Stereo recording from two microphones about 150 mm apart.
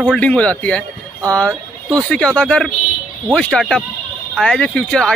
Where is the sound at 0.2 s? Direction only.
10° left (ahead or behind).